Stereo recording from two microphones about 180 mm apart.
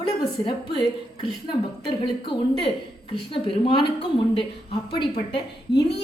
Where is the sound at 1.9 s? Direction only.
25° left (ahead or behind).